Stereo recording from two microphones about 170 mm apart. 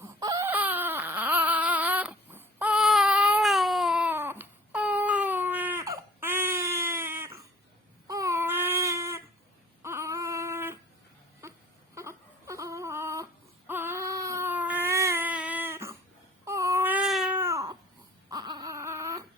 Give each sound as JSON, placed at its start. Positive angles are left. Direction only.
{"t": 0.0, "sound": "a sound", "side_deg": -20}
{"t": 11.4, "sound": "wail", "side_deg": -15}
{"t": 11.9, "sound": "whimper", "side_deg": -20}
{"t": 13.7, "sound": "baby cry", "side_deg": -10}
{"t": 16.5, "sound": "a sound", "side_deg": -15}
{"t": 18.3, "sound": "baby cry", "side_deg": -25}